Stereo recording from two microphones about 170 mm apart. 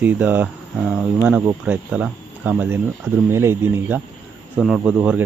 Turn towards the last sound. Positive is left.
turn(degrees=-5)  # may be behind; listen again after turning